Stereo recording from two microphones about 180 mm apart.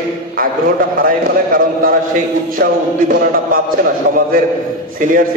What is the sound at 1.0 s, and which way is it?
A man's voice, 50° right (ahead or behind).